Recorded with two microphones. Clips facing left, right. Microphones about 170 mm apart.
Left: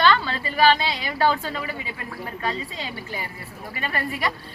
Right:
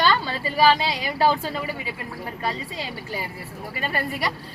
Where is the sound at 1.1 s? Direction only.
10° right (ahead or behind).